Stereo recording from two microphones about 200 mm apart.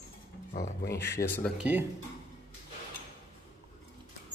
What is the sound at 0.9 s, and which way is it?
Speech, 10° left (ahead or behind).